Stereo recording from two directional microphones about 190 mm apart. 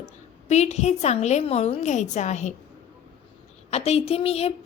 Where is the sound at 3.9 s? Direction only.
30° left (ahead or behind).